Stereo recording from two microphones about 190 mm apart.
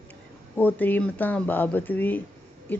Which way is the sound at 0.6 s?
10° left (ahead or behind).